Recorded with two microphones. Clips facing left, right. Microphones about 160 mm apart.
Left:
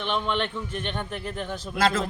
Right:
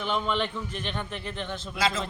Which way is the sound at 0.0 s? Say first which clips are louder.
Left 1 dB; 5° right (ahead or behind).